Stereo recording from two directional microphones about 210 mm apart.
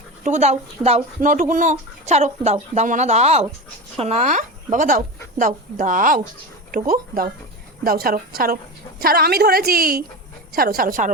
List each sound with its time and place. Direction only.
0.3 s a woman's voice: 35° right (ahead or behind)